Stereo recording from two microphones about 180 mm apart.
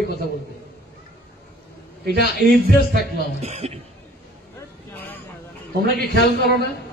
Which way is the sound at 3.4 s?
35° right (ahead or behind).